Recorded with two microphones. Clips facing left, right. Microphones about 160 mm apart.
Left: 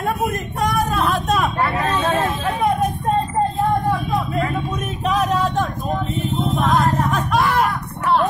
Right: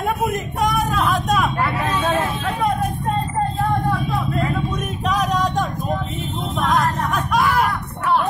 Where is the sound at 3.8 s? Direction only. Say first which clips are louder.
Left 1 dB; 10° left (ahead or behind).